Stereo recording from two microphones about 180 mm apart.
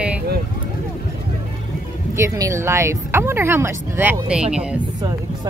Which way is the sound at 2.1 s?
15° right (ahead or behind).